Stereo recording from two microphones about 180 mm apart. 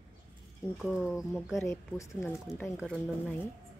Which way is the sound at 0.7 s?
Centre (ahead or behind).